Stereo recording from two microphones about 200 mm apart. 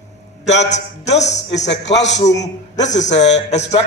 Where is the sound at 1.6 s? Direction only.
60° left (ahead or behind).